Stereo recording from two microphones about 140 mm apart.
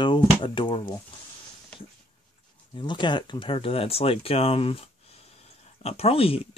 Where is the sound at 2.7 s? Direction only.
35° left (ahead or behind).